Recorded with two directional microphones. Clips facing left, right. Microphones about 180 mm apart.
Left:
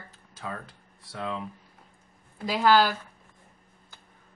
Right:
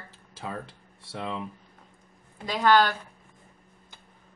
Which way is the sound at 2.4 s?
5° left (ahead or behind).